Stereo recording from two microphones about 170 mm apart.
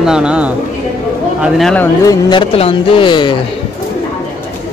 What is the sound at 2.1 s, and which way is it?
Speech, 25° left (ahead or behind).